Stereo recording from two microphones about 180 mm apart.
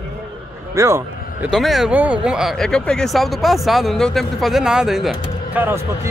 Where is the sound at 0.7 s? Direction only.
15° right (ahead or behind).